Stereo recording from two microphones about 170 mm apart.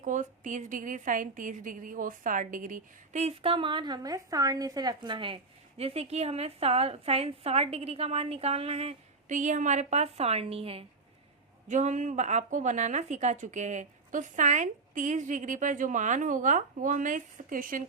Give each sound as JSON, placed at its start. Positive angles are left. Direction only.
{"t": 0.0, "sound": "a woman's voice", "side_deg": -50}